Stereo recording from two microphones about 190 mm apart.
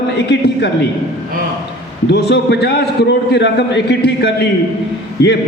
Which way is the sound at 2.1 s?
60° left (ahead or behind).